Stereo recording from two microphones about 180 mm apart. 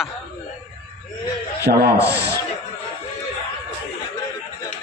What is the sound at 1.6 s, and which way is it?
Rub, 60° right (ahead or behind).